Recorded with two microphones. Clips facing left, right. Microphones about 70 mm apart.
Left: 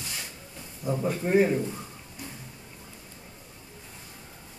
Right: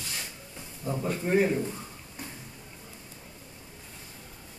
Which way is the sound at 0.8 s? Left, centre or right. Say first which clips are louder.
Left 3 dB; centre.